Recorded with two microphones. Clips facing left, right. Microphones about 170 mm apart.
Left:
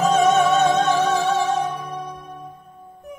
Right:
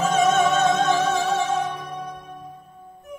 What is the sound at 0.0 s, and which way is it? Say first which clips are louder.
Music: left 2 dB; 35° left (ahead or behind).